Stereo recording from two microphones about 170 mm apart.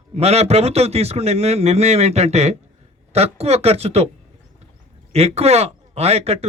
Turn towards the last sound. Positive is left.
turn(degrees=-40)  # may be behind; listen again after turning